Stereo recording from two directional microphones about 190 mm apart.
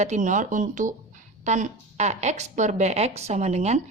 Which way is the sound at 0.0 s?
40° right (ahead or behind).